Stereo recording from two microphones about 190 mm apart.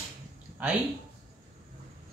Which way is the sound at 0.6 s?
10° right (ahead or behind).